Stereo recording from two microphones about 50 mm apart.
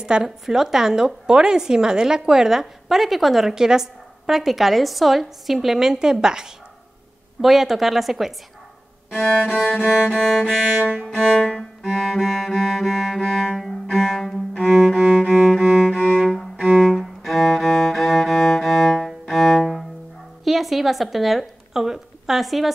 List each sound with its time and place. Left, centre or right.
0.0 s a woman's voice: centre
7.4 s cello: centre
9.1 s music: centre
10.0 s cello: centre
10.8 s music: right
11.1 s cello: centre
14.7 s music: centre
16.0 s cello: centre
16.8 s music: centre
20.4 s a woman's voice: centre